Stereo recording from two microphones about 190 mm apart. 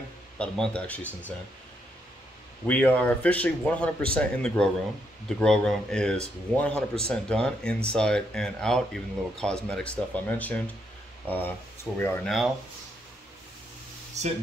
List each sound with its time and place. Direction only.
0.4 s speech: 5° left (ahead or behind)
2.6 s speech: 10° left (ahead or behind)
14.2 s speech: 35° right (ahead or behind)